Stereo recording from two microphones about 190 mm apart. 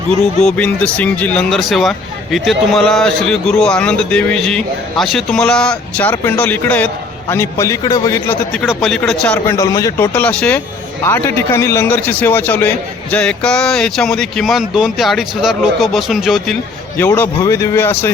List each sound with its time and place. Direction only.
0.4 s speech: 5° left (ahead or behind)
8.5 s speech: centre (ahead or behind)
9.6 s speech: 15° left (ahead or behind); by 16.6 s centre (ahead or behind)
17.0 s speech: 15° left (ahead or behind)